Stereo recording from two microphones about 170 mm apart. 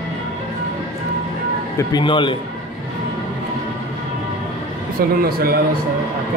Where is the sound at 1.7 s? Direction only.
25° left (ahead or behind).